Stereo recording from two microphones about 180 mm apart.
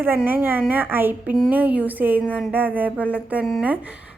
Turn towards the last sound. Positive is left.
turn(degrees=-5)  # may be behind; listen again after turning